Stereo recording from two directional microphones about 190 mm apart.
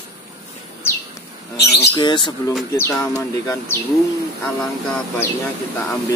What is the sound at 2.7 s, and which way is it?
Speech, 15° left (ahead or behind).